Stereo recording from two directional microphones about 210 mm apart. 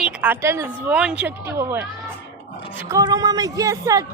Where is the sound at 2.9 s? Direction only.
15° right (ahead or behind).